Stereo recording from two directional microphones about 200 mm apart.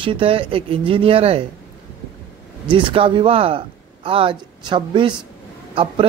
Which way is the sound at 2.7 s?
25° right (ahead or behind).